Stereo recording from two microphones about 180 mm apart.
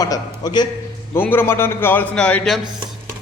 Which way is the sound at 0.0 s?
20° left (ahead or behind).